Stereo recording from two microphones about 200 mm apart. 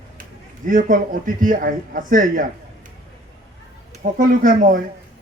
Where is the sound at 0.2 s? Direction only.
45° right (ahead or behind).